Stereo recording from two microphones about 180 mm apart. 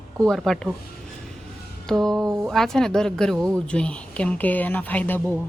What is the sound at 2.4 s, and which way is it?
A woman's voice, centre (ahead or behind).